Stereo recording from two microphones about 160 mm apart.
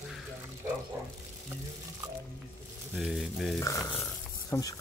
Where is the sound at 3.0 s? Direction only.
Centre (ahead or behind).